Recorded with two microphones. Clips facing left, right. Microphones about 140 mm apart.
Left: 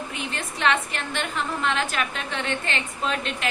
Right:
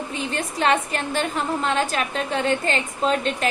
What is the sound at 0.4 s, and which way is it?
Speech, 40° right (ahead or behind).